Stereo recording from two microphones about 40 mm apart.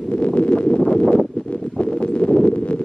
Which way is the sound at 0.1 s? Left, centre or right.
Left.